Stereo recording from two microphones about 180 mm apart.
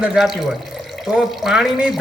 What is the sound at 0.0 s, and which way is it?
Speech, 5° right (ahead or behind).